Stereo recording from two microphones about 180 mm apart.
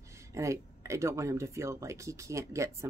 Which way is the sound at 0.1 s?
15° right (ahead or behind).